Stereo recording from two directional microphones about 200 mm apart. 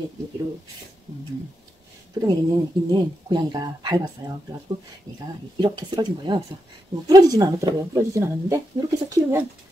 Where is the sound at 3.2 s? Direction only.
20° right (ahead or behind).